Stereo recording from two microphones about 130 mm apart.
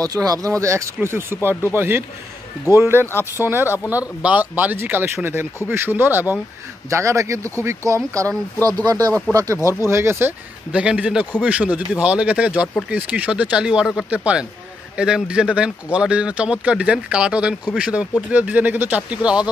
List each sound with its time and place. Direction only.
0.0 s speech: 30° right (ahead or behind)
3.1 s speech: 20° left (ahead or behind)
3.7 s speech: 10° right (ahead or behind)